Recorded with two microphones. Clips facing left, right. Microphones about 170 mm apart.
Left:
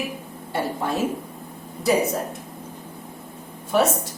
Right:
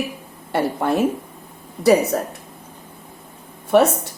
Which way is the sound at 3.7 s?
65° right (ahead or behind).